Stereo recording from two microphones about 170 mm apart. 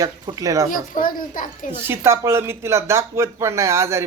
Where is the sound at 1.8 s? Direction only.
15° right (ahead or behind).